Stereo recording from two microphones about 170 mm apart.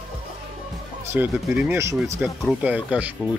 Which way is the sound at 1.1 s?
10° right (ahead or behind).